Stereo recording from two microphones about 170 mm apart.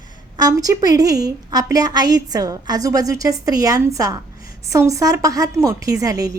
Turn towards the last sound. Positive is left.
turn(degrees=-20)  # may be behind; listen again after turning